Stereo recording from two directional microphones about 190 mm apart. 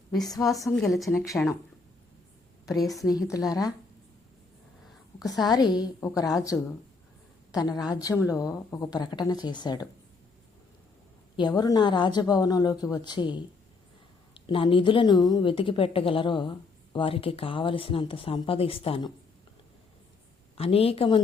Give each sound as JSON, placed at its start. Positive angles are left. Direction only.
{"t": 0.4, "sound": "a woman's voice", "side_deg": 15}
{"t": 0.9, "sound": "a woman's voice", "side_deg": 0}
{"t": 2.7, "sound": "a woman's voice", "side_deg": 0}
{"t": 3.1, "sound": "a woman's voice", "side_deg": 20}
{"t": 5.4, "sound": "a woman's voice", "side_deg": 20}
{"t": 11.3, "sound": "a woman's voice", "side_deg": 20}
{"t": 20.6, "sound": "a woman's voice", "side_deg": 30}